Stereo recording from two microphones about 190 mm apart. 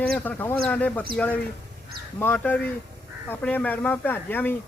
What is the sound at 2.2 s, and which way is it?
A man's voice, 10° left (ahead or behind).